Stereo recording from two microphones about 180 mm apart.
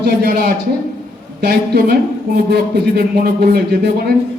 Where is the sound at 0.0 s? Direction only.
60° right (ahead or behind).